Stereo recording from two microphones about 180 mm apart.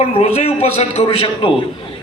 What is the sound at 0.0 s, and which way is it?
A man's voice, 35° left (ahead or behind).